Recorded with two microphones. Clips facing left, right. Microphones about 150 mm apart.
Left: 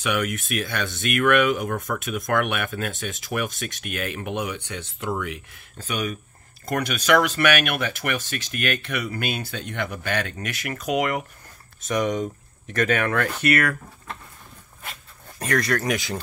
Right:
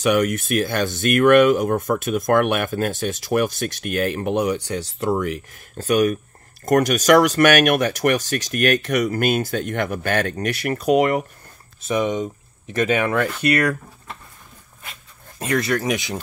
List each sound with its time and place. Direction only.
0.0 s speech: 40° right (ahead or behind); by 14.1 s 20° right (ahead or behind)
15.7 s speech: 5° right (ahead or behind)